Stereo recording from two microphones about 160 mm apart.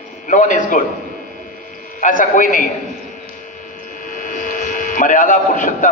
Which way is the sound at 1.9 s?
55° left (ahead or behind).